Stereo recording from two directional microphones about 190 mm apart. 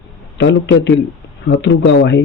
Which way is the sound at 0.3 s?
70° left (ahead or behind).